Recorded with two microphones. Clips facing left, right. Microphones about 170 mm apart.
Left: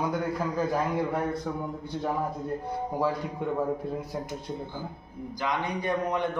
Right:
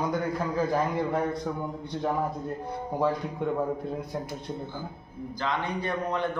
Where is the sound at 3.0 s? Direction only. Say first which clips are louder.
Right 3 dB; centre (ahead or behind).